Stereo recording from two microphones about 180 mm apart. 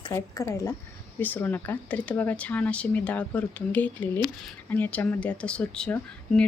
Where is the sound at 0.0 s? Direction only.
20° left (ahead or behind).